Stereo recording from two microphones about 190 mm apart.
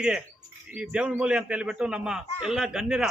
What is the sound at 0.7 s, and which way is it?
A man's voice, 5° right (ahead or behind).